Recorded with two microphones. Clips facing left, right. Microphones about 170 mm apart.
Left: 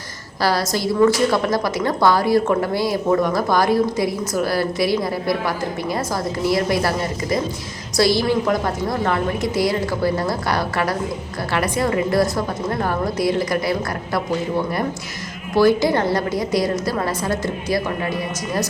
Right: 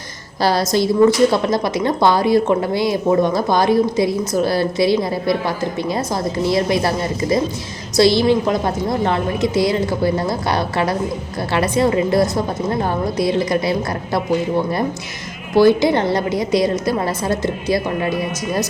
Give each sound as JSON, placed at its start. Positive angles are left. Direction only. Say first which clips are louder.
{"t": 0.4, "sound": "a woman's voice", "louder": "right 4 dB", "side_deg": -25}
{"t": 6.4, "sound": "a woman's voice", "louder": "right 2 dB", "side_deg": -25}
{"t": 15.5, "sound": "a woman's voice", "louder": "right 3 dB", "side_deg": -25}